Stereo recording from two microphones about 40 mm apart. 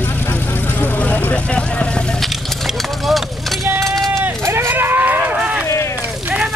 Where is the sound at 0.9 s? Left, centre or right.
Left.